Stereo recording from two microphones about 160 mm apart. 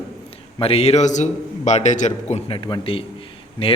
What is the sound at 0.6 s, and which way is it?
A man's voice, 40° left (ahead or behind).